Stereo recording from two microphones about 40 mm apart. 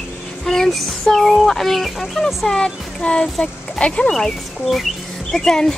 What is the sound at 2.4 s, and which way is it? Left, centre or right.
Speech, centre.